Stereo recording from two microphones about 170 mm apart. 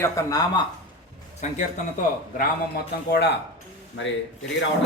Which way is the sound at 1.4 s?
45° left (ahead or behind).